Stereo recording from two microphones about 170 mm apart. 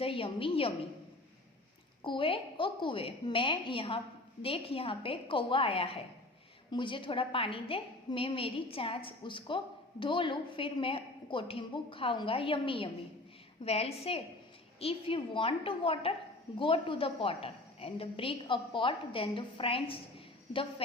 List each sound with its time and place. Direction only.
0.0 s a woman's voice: 30° left (ahead or behind)
2.0 s a woman's voice: 30° left (ahead or behind)